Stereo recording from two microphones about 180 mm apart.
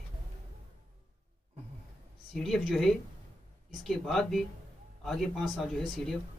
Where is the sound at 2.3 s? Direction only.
Centre (ahead or behind).